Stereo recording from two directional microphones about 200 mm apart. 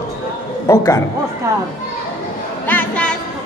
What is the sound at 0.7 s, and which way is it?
Speech, 15° left (ahead or behind).